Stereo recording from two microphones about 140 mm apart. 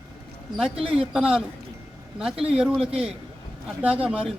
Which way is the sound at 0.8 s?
40° right (ahead or behind).